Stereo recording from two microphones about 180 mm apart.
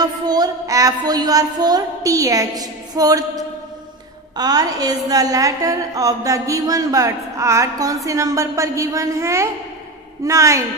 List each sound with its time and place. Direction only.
0.0 s a woman's voice: 20° right (ahead or behind)